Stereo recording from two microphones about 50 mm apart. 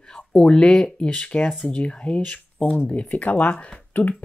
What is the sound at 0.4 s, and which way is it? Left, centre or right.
Speech, centre.